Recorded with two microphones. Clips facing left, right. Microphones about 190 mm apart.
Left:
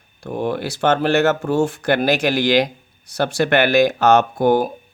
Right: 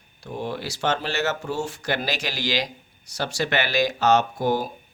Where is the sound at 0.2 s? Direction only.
55° left (ahead or behind).